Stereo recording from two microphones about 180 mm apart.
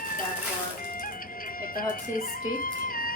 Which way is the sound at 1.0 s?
50° left (ahead or behind).